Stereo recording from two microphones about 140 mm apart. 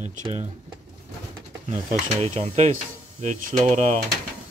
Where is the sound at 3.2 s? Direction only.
65° right (ahead or behind).